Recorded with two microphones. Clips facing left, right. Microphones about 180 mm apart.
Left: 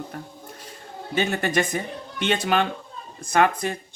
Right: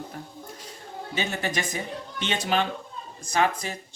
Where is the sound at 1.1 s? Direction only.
55° left (ahead or behind).